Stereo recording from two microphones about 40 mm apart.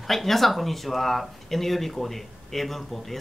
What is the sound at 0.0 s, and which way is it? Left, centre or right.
Speech, centre.